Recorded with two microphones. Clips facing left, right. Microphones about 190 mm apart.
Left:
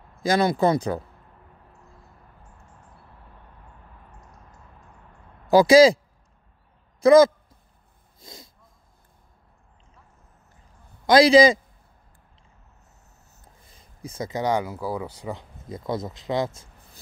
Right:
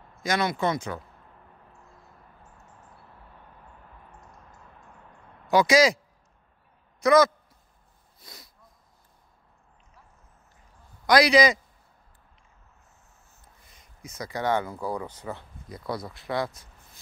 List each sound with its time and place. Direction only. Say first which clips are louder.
0.2 s speech: left 6 dB; 35° left (ahead or behind)
5.5 s speech: left 6 dB; 30° left (ahead or behind)
7.0 s a man's voice: left 5 dB; 30° left (ahead or behind)
8.2 s wheeze: left 5 dB; 25° left (ahead or behind)
11.1 s speech: left 5 dB; 25° left (ahead or behind)
13.3 s speech: left 4 dB; 30° left (ahead or behind); by 15.4 s 10° left (ahead or behind)
15.7 s speech: left 4 dB; 25° left (ahead or behind)